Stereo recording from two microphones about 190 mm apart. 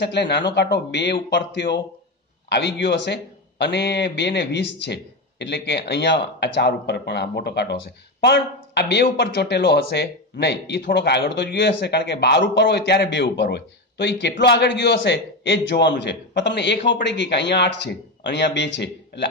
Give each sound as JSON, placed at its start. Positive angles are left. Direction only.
{"t": 0.0, "sound": "a man's voice", "side_deg": 65}